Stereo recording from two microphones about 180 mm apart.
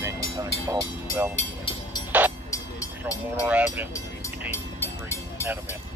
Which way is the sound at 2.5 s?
20° left (ahead or behind).